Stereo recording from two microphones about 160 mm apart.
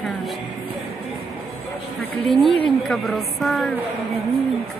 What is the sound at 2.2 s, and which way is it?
A woman's voice, centre (ahead or behind).